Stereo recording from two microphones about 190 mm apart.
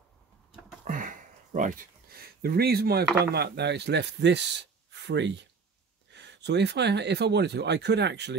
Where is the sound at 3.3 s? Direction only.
60° right (ahead or behind).